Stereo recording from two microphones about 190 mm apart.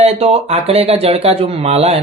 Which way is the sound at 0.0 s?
35° right (ahead or behind).